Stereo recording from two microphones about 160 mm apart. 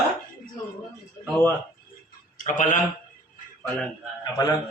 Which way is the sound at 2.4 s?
55° left (ahead or behind).